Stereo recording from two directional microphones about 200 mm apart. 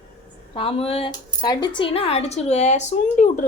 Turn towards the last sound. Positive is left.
turn(degrees=40)  # may be behind; listen again after turning